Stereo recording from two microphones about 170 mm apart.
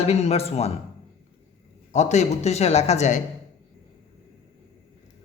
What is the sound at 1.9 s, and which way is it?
Speech, 40° left (ahead or behind).